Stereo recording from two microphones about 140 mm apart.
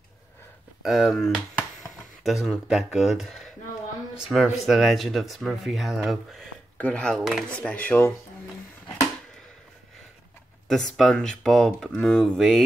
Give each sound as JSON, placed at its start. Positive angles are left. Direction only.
{"t": 0.8, "sound": "speech", "side_deg": 0}
{"t": 10.7, "sound": "speech", "side_deg": 0}